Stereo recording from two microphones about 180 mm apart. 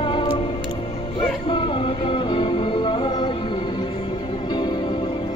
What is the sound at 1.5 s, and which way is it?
Music, 30° left (ahead or behind).